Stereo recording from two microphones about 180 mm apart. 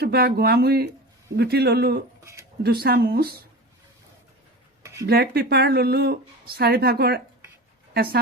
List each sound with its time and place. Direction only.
0.0 s speech: 60° right (ahead or behind)
5.0 s speech: 60° right (ahead or behind)